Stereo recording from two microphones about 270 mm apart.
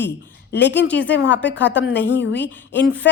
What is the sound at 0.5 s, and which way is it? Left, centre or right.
Speech, left.